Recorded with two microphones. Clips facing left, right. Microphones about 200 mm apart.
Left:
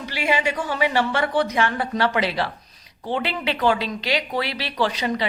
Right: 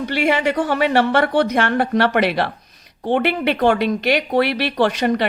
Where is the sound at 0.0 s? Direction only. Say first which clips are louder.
Right 5 dB; 60° right (ahead or behind).